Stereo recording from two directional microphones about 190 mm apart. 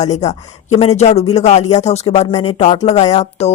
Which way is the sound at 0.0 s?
35° left (ahead or behind).